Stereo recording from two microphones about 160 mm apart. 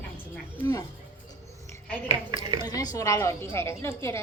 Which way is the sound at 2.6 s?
25° left (ahead or behind).